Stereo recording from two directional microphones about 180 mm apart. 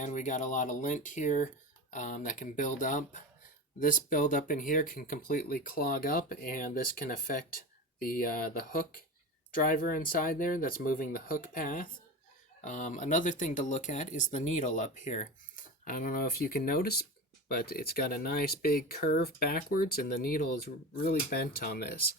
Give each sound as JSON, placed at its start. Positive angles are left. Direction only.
{"t": 0.0, "sound": "speech", "side_deg": 45}